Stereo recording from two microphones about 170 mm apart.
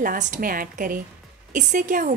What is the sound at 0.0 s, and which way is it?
A woman's voice, 50° right (ahead or behind).